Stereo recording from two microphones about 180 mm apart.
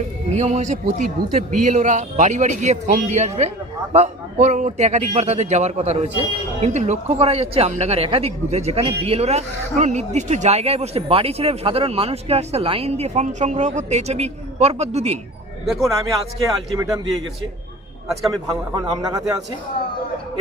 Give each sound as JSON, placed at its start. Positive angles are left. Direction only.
{"t": 0.3, "sound": "speech", "side_deg": -40}
{"t": 15.6, "sound": "a man's voice", "side_deg": 0}
{"t": 16.7, "sound": "a man's voice", "side_deg": -20}
{"t": 18.3, "sound": "a man's voice", "side_deg": -20}